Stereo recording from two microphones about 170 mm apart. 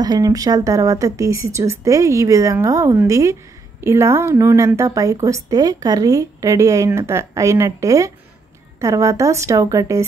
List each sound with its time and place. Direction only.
0.0 s speech: 20° right (ahead or behind)